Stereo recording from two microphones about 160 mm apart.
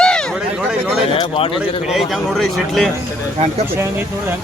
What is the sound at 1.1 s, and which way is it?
Speech, 35° left (ahead or behind).